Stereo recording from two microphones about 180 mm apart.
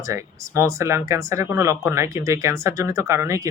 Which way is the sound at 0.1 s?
15° right (ahead or behind).